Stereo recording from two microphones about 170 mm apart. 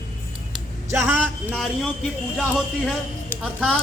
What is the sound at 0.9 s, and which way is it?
Speech, 15° right (ahead or behind).